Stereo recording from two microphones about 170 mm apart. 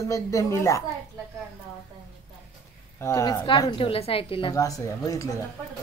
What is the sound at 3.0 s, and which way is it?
A woman's voice, 15° left (ahead or behind).